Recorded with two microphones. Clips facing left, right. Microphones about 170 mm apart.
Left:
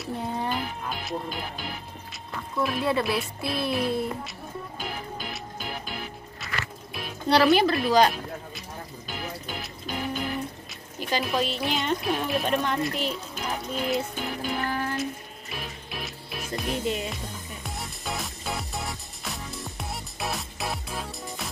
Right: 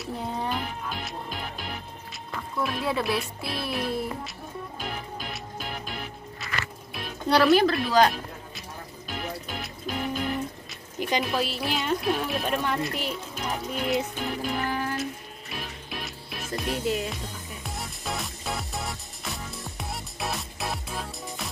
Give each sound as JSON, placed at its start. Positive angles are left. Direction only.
{"t": 0.0, "sound": "music", "side_deg": 0}
{"t": 2.6, "sound": "speech", "side_deg": 0}
{"t": 4.7, "sound": "music", "side_deg": 0}
{"t": 11.0, "sound": "a woman's voice", "side_deg": -20}
{"t": 11.2, "sound": "speech", "side_deg": -5}
{"t": 14.7, "sound": "music", "side_deg": -10}